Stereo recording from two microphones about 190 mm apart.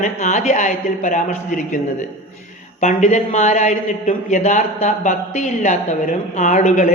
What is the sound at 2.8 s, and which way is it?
A man's voice, 40° left (ahead or behind).